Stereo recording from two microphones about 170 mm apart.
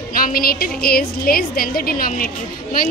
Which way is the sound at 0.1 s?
60° left (ahead or behind).